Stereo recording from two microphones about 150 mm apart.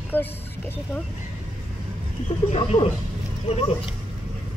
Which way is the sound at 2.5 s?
45° left (ahead or behind).